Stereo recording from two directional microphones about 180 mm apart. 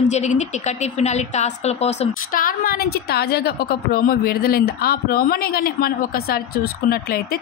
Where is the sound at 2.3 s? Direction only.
55° left (ahead or behind).